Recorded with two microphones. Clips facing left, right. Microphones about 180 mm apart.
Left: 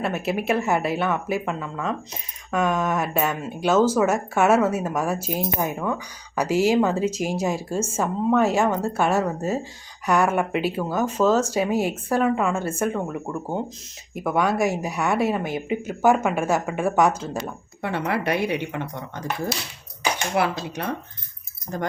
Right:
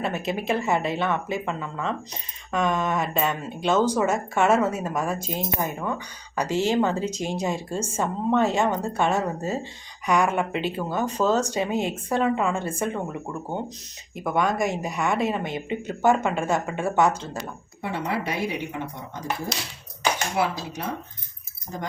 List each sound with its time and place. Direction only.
0.0 s a woman's voice: 5° left (ahead or behind)
17.8 s speech: 65° left (ahead or behind)